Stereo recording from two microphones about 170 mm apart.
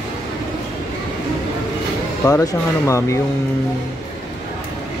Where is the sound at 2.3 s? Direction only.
20° left (ahead or behind).